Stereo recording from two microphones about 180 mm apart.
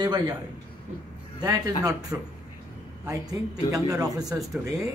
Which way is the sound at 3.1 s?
20° right (ahead or behind).